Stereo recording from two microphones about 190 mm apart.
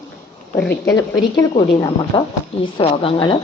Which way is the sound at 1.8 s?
25° left (ahead or behind).